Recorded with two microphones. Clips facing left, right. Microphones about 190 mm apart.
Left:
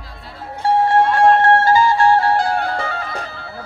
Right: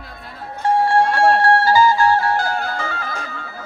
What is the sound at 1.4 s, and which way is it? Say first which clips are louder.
Music: left 1 dB; 25° left (ahead or behind).